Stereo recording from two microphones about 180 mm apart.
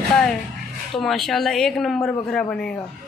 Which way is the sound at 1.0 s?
Centre (ahead or behind).